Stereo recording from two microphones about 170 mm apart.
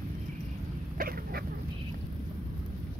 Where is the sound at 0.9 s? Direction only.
60° right (ahead or behind).